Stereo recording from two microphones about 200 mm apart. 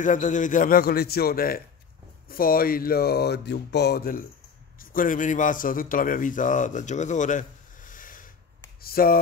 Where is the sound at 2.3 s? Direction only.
45° left (ahead or behind).